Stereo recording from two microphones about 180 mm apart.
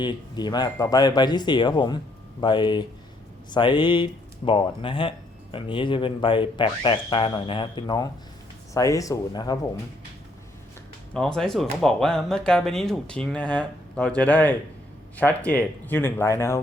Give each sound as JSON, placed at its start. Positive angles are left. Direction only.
{"t": 0.0, "sound": "speech", "side_deg": 25}
{"t": 11.1, "sound": "speech", "side_deg": 5}